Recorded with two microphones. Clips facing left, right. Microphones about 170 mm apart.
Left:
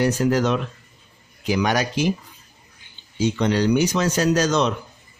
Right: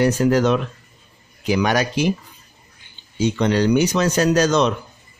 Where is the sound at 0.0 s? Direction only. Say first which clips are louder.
Right 3 dB; 65° right (ahead or behind).